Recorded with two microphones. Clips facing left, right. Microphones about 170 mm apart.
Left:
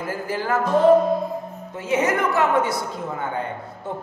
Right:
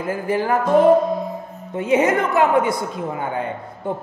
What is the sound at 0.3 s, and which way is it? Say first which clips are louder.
A man's voice: right 4 dB; 15° right (ahead or behind).